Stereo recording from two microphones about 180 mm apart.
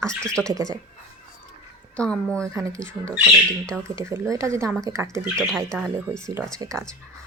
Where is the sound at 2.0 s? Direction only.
5° left (ahead or behind).